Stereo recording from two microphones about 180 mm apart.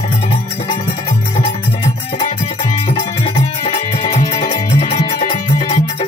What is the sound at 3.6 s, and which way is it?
Music, 35° left (ahead or behind).